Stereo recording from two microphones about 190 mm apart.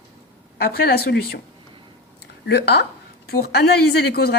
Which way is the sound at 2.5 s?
60° left (ahead or behind).